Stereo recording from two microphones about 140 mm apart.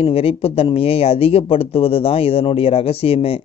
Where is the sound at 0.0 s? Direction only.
45° left (ahead or behind).